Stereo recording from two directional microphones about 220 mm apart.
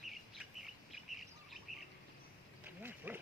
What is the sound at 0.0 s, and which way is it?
Bird, centre (ahead or behind).